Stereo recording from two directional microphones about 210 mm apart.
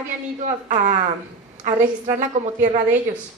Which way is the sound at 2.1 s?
35° right (ahead or behind).